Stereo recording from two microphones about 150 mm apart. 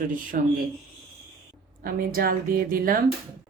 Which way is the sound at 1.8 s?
75° right (ahead or behind).